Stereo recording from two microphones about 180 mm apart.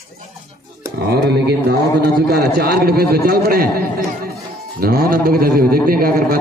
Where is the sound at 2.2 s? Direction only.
60° right (ahead or behind).